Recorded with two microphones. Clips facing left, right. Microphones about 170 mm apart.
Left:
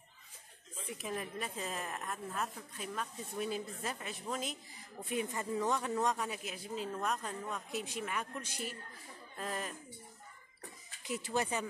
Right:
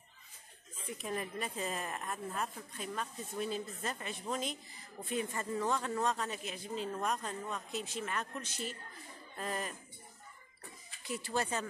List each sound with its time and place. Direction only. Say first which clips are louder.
0.9 s a woman's voice: right 1 dB; centre (ahead or behind)
5.1 s speech: even; 15° left (ahead or behind)
9.4 s a woman's voice: right 1 dB; centre (ahead or behind)
11.1 s speech: left 1 dB; 20° left (ahead or behind)